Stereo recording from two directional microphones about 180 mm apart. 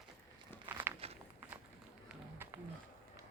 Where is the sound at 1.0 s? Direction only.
35° right (ahead or behind).